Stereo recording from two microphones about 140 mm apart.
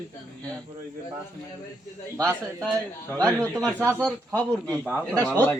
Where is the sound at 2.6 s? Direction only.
10° left (ahead or behind).